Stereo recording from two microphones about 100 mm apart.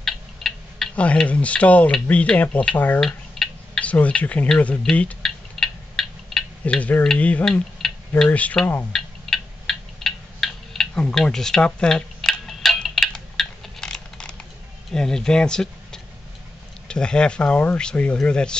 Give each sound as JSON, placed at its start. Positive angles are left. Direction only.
{"t": 0.0, "sound": "speech", "side_deg": 5}
{"t": 3.0, "sound": "speech", "side_deg": 5}
{"t": 5.2, "sound": "cat", "side_deg": 5}
{"t": 6.6, "sound": "speech", "side_deg": 15}
{"t": 8.9, "sound": "a sound", "side_deg": 5}
{"t": 14.9, "sound": "speech", "side_deg": 5}